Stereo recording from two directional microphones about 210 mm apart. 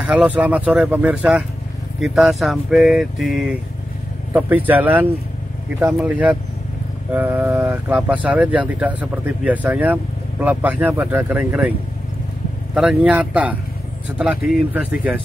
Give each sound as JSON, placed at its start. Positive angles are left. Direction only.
{"t": 0.0, "sound": "speech", "side_deg": -5}
{"t": 12.7, "sound": "speech", "side_deg": -5}